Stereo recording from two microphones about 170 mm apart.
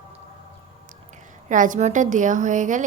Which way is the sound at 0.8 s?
50° right (ahead or behind).